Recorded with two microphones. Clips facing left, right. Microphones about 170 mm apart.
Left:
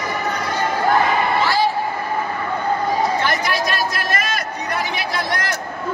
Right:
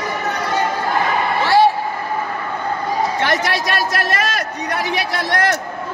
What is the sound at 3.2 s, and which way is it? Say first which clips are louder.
Chatter: right 2 dB; 80° right.